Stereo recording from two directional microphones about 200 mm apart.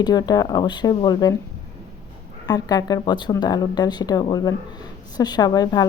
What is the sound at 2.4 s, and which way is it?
Speech, 20° left (ahead or behind).